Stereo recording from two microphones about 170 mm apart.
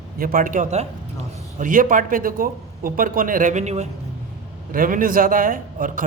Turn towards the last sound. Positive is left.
turn(degrees=-55)  # may be behind; listen again after turning